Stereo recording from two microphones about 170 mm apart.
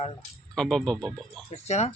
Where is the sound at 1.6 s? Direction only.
40° left (ahead or behind).